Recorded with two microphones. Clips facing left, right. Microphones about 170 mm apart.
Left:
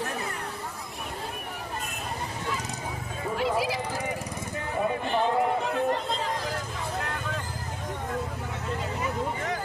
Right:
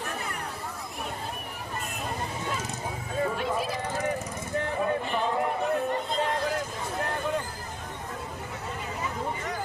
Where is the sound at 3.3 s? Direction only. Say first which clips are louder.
Left 3 dB; 90° left.